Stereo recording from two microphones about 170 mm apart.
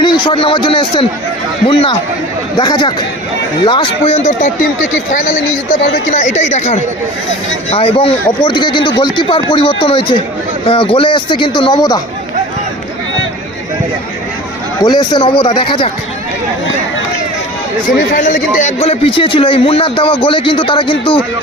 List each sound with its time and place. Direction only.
0.0 s a man's voice: 25° left (ahead or behind); by 5.8 s 55° left (ahead or behind)
6.1 s a man's voice: 40° left (ahead or behind); by 11.9 s 25° left (ahead or behind)
14.8 s speech: 25° left (ahead or behind)
17.8 s a man's voice: 50° left (ahead or behind); by 21.2 s 30° left (ahead or behind)